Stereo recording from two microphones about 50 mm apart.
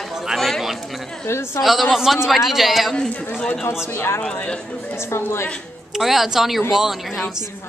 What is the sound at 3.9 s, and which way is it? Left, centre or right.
A man's voice, left.